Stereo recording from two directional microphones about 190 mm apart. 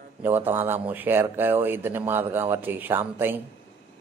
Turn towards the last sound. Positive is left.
turn(degrees=-10)  # may be behind; listen again after turning